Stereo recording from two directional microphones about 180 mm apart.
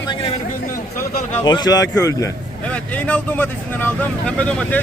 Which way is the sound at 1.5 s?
25° left (ahead or behind).